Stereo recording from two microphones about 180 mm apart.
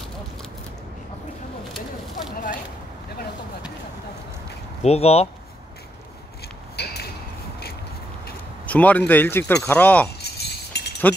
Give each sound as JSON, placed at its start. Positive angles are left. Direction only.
{"t": 4.8, "sound": "speech", "side_deg": 35}
{"t": 6.8, "sound": "a sound", "side_deg": 65}
{"t": 8.6, "sound": "speech", "side_deg": 10}
{"t": 10.2, "sound": "chink", "side_deg": 65}